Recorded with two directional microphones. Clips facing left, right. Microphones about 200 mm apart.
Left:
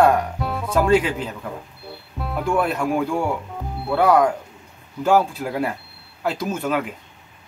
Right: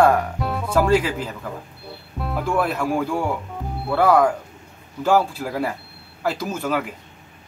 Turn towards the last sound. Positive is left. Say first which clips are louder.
# left 1 dB
turn(degrees=-5)  # may be behind; listen again after turning